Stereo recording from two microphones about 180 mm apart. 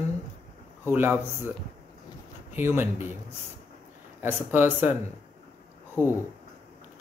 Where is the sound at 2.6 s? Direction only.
10° right (ahead or behind).